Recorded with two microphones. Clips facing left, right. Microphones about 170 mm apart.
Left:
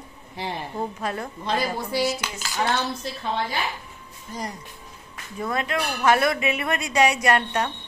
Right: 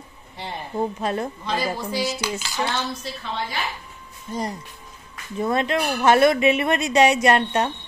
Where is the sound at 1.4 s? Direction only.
55° left (ahead or behind).